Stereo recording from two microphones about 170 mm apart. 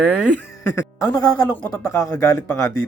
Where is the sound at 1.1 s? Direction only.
20° left (ahead or behind).